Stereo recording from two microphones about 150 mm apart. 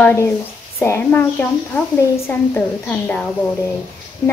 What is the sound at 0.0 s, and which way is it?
A woman's voice, 15° left (ahead or behind).